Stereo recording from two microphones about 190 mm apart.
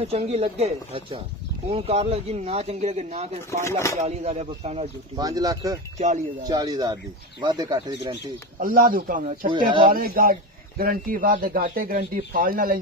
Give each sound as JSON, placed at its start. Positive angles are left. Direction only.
{"t": 0.0, "sound": "speech", "side_deg": -30}
{"t": 5.1, "sound": "speech", "side_deg": -20}
{"t": 5.9, "sound": "speech", "side_deg": -40}
{"t": 6.4, "sound": "speech", "side_deg": -20}
{"t": 8.5, "sound": "a man's voice", "side_deg": -45}